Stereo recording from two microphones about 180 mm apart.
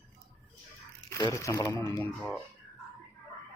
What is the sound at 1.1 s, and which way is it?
Speech, 20° left (ahead or behind).